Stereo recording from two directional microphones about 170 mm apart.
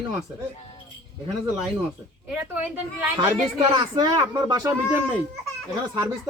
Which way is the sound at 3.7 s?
25° right (ahead or behind).